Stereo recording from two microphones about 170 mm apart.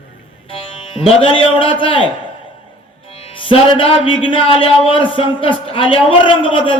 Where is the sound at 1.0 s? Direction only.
30° left (ahead or behind).